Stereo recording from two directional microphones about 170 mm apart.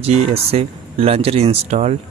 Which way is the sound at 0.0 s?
35° right (ahead or behind).